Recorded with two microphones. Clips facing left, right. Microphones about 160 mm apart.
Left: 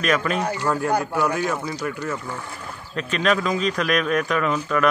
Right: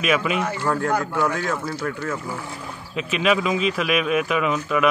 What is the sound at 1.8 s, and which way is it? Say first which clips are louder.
Speech: even; 15° left (ahead or behind).